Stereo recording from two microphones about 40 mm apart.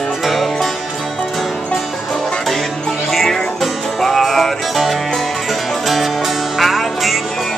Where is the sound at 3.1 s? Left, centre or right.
Centre.